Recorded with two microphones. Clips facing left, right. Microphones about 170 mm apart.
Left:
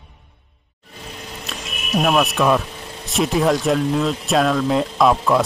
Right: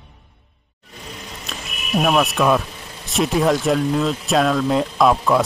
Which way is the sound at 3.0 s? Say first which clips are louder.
Even; centre (ahead or behind).